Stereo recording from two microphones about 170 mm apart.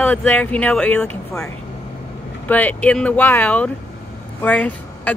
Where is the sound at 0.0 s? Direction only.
10° left (ahead or behind).